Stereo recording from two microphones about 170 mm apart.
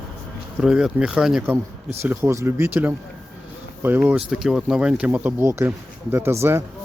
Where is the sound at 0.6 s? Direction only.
5° right (ahead or behind).